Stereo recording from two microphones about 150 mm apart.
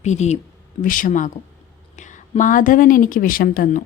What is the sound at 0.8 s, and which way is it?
A woman's voice, 65° left (ahead or behind).